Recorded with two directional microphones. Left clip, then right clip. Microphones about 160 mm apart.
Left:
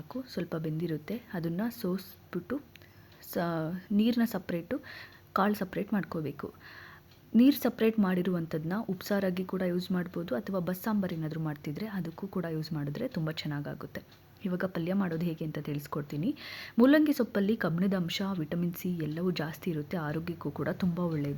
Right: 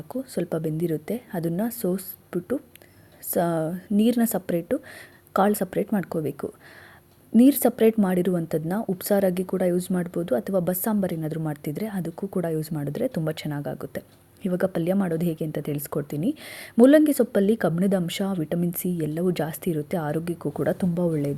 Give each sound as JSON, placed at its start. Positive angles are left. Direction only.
{"t": 0.1, "sound": "a woman's voice", "side_deg": -35}